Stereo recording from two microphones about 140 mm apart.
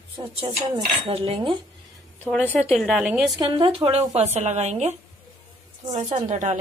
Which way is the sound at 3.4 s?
35° right (ahead or behind).